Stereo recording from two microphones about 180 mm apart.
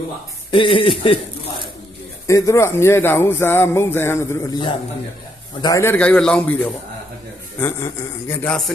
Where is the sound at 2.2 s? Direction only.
15° left (ahead or behind).